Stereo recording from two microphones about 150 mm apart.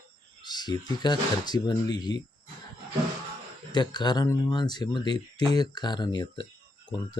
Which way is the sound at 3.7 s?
30° left (ahead or behind).